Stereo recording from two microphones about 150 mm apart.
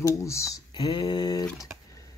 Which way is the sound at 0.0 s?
20° left (ahead or behind).